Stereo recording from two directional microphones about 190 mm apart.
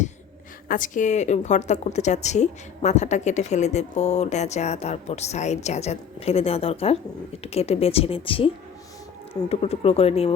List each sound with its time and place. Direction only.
0.7 s a woman's voice: 40° left (ahead or behind)